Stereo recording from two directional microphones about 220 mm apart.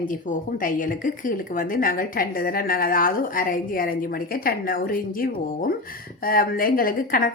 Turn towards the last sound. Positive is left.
turn(degrees=40)  # may be behind; listen again after turning